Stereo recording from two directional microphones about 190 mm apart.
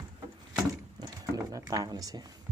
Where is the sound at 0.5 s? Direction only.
20° right (ahead or behind).